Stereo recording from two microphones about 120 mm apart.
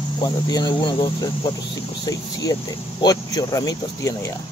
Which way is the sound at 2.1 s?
30° left (ahead or behind).